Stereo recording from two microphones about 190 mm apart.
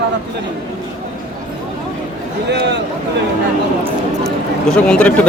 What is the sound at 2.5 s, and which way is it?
Speech, 65° right (ahead or behind).